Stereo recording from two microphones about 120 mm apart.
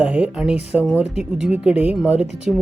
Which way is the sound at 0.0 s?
10° right (ahead or behind).